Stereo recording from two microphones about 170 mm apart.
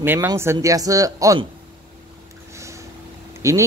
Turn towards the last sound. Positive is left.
turn(degrees=-20)  # may be behind; listen again after turning